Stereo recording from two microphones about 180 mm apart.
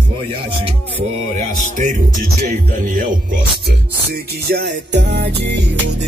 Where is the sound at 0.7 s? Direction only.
35° right (ahead or behind).